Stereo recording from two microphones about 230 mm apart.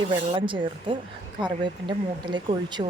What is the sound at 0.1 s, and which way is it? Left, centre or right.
Speech, right.